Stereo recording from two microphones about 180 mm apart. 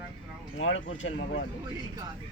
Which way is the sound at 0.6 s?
90° left.